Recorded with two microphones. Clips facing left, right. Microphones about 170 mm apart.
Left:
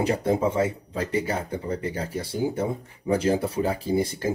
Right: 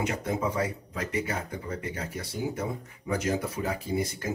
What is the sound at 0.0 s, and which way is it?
Speech, 30° left (ahead or behind).